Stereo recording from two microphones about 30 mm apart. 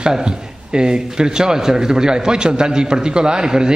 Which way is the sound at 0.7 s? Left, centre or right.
Right.